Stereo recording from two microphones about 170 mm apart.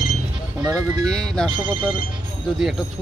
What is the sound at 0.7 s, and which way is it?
Speech, 20° right (ahead or behind).